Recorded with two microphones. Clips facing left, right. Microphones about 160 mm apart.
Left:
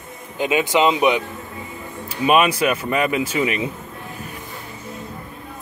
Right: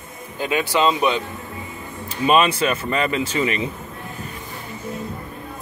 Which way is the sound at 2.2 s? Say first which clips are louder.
Left 1 dB; 10° left (ahead or behind).